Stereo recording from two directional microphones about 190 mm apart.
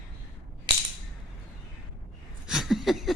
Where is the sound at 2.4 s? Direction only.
Centre (ahead or behind).